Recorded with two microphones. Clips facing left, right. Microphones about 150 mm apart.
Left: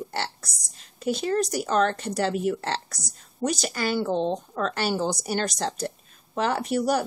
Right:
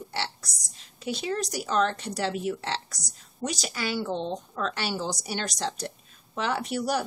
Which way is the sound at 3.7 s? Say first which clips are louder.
Left 4 dB; 50° left (ahead or behind).